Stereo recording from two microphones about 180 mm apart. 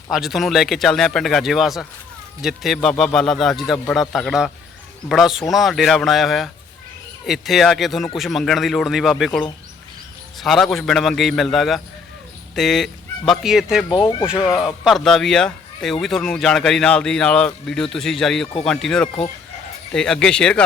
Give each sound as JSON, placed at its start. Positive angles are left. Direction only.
{"t": 0.1, "sound": "speech", "side_deg": 0}
{"t": 19.0, "sound": "speech", "side_deg": 30}
{"t": 19.9, "sound": "speech", "side_deg": 5}